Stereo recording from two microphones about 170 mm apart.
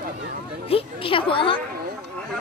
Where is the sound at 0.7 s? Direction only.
30° left (ahead or behind).